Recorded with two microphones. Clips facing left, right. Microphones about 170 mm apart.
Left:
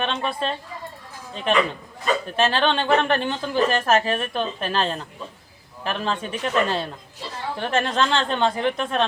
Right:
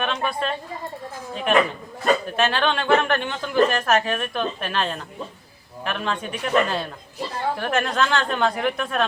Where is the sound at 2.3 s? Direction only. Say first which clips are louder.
Left 1 dB; 30° left (ahead or behind).